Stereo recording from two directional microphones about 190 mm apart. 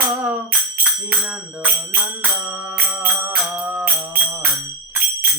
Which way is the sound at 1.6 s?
10° right (ahead or behind).